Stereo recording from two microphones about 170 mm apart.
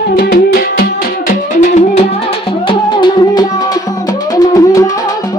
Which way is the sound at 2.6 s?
25° left (ahead or behind).